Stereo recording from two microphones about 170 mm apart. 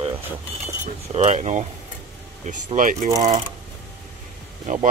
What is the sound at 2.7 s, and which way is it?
Speech, 50° right (ahead or behind).